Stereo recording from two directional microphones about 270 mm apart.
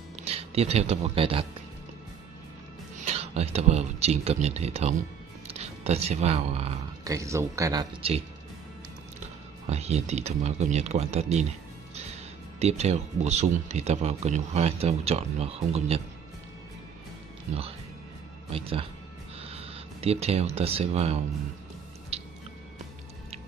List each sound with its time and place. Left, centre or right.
0.1 s speech: right
3.1 s speech: right
7.1 s speech: centre
9.7 s speech: right
18.5 s speech: centre
22.1 s a sound: right